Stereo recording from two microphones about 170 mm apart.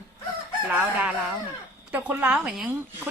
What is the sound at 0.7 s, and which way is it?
Speech, 5° right (ahead or behind).